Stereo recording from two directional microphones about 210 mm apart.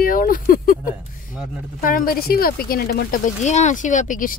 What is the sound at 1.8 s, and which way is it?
Speech, 45° left (ahead or behind).